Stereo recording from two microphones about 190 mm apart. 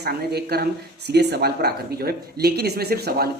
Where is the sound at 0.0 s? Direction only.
55° right (ahead or behind).